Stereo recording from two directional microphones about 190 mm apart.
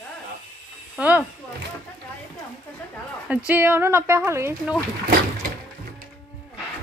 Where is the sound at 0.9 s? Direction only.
5° right (ahead or behind).